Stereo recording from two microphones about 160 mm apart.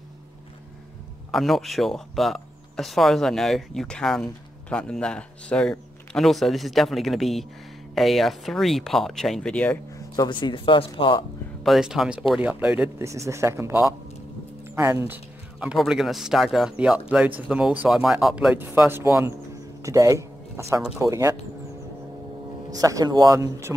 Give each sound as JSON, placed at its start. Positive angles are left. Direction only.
{"t": 1.3, "sound": "speech", "side_deg": 0}
{"t": 9.9, "sound": "speech", "side_deg": 25}
{"t": 11.6, "sound": "speech", "side_deg": 0}
{"t": 15.6, "sound": "speech", "side_deg": -5}
{"t": 22.7, "sound": "speech", "side_deg": -20}